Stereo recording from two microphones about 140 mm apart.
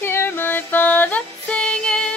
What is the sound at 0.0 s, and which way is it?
Music, 15° left (ahead or behind).